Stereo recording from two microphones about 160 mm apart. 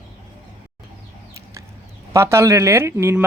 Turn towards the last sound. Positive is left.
turn(degrees=-15)  # may be behind; listen again after turning